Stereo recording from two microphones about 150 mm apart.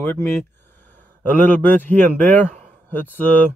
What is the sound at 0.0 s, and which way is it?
A man's voice, 15° left (ahead or behind).